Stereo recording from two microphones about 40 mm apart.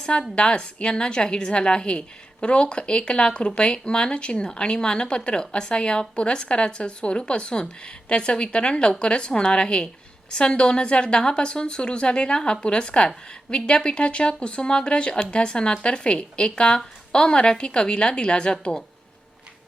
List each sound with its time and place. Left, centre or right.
0.0 s a woman's voice: left